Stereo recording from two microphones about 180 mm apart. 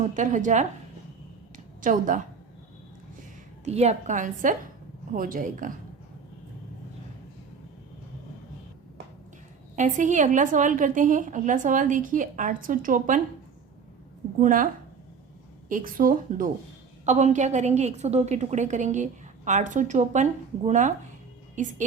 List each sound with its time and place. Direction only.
0.0 s a woman's voice: 45° right (ahead or behind)
1.5 s a sound: 45° right (ahead or behind)
3.6 s a woman's voice: 35° right (ahead or behind)
9.7 s a woman's voice: 45° right (ahead or behind)
14.4 s a woman's voice: 50° right (ahead or behind)
15.7 s a woman's voice: 50° right (ahead or behind)
17.1 s a woman's voice: 40° right (ahead or behind)